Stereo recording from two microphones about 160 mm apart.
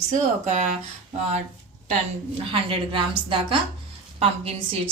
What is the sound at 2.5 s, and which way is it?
Speech, 35° right (ahead or behind).